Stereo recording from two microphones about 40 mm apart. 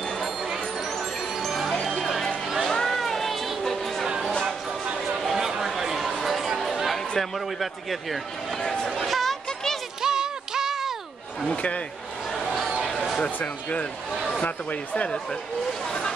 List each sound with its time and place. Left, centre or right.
1.4 s music: centre
5.2 s a sound: centre
6.2 s chatter: centre
6.6 s a sound: centre
8.6 s chatter: centre
9.0 s music: centre
10.0 s music: centre
11.4 s speech: left
13.4 s speech: left